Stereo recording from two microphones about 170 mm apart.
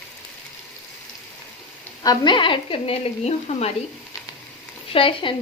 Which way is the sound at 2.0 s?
25° left (ahead or behind).